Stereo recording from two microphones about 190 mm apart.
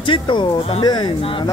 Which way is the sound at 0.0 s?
25° left (ahead or behind).